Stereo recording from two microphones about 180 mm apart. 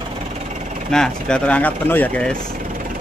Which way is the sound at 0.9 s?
5° left (ahead or behind).